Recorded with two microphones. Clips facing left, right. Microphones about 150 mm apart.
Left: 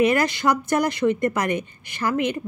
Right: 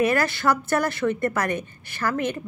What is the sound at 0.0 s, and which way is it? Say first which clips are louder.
A woman's voice: left 2 dB; 15° left (ahead or behind).